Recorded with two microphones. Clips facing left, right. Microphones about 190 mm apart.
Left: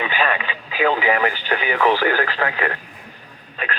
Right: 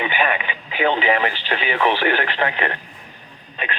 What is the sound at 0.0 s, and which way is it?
Speech, 20° right (ahead or behind).